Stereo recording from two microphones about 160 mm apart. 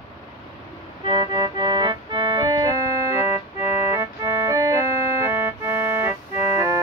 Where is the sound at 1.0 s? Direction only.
25° right (ahead or behind).